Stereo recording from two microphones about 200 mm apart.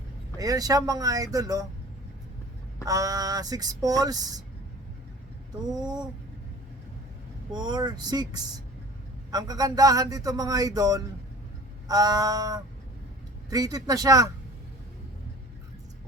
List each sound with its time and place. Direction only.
0.3 s speech: 20° right (ahead or behind)
2.8 s speech: 15° right (ahead or behind)
5.6 s speech: 20° right (ahead or behind)
7.5 s speech: 20° right (ahead or behind)